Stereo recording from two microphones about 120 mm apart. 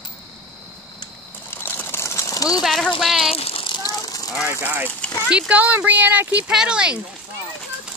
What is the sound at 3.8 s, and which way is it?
Vehicle, 30° left (ahead or behind).